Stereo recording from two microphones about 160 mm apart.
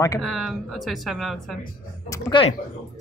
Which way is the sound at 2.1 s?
20° left (ahead or behind).